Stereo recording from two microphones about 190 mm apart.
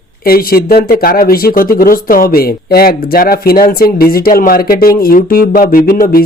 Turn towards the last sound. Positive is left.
turn(degrees=50)  # may be behind; listen again after turning